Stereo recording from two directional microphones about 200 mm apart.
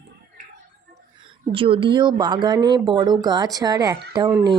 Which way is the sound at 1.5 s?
25° right (ahead or behind).